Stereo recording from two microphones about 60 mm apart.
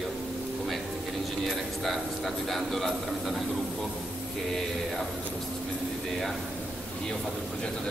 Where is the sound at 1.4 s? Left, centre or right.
Centre.